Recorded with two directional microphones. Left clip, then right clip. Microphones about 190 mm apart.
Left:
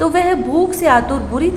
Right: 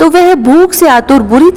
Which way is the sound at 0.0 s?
50° right (ahead or behind).